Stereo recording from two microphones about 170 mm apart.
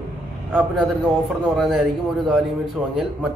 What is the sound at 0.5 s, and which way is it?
Speech, centre (ahead or behind).